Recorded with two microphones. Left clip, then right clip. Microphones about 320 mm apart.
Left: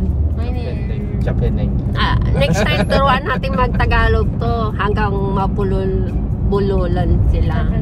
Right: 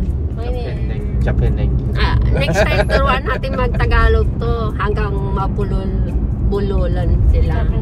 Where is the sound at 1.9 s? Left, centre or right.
Centre.